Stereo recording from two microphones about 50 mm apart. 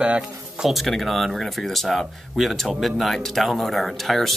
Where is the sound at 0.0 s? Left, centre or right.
Centre.